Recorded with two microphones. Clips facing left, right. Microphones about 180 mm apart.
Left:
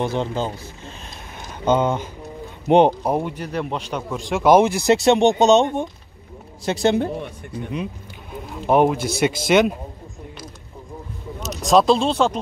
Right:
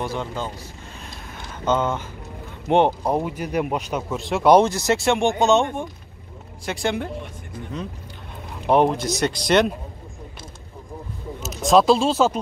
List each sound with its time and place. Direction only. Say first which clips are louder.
0.0 s speech: left 5 dB; 25° left (ahead or behind)
1.7 s speech: left 3 dB; 15° left (ahead or behind)
3.1 s a man's voice: even; centre (ahead or behind); by 7.1 s 25° left (ahead or behind)
8.6 s a man's voice: left 1 dB; 5° left (ahead or behind)
11.4 s speech: even; centre (ahead or behind)